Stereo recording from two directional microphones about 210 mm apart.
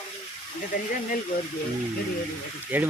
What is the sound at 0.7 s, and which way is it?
Speech, 40° left (ahead or behind).